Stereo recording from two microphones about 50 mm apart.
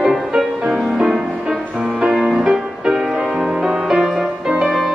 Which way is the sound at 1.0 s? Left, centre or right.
Centre.